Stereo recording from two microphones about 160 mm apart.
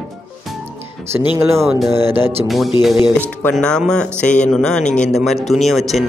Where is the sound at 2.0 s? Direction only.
15° right (ahead or behind).